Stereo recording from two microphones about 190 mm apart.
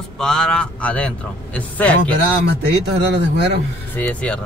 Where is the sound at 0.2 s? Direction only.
5° left (ahead or behind).